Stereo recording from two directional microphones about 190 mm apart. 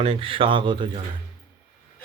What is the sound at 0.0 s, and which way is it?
Speech, 30° right (ahead or behind).